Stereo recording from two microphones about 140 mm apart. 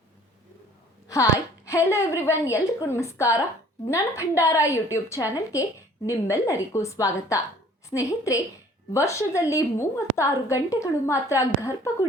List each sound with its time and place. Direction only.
1.0 s a woman's voice: 25° left (ahead or behind)